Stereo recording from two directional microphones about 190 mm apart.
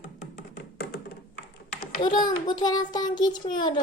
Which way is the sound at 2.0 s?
25° left (ahead or behind).